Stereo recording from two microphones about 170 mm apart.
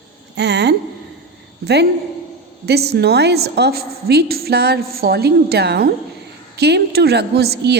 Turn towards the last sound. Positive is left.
turn(degrees=-75)  # may be behind; listen again after turning